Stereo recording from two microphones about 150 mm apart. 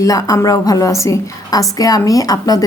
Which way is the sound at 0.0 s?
25° left (ahead or behind).